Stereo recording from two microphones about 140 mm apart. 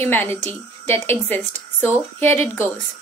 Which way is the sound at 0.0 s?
15° left (ahead or behind).